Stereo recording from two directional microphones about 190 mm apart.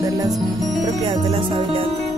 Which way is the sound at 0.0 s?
20° right (ahead or behind).